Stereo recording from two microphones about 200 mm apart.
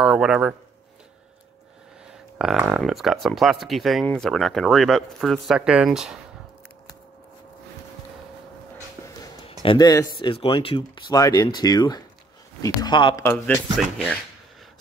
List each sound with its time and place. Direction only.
0.0 s speech: 5° right (ahead or behind)
2.3 s speech: 5° right (ahead or behind)
9.5 s speech: 25° left (ahead or behind)